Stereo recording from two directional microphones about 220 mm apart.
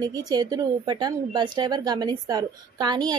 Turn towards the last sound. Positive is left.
turn(degrees=-20)  # may be behind; listen again after turning